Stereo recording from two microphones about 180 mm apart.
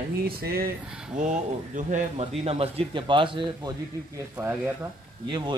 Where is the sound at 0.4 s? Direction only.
55° right (ahead or behind).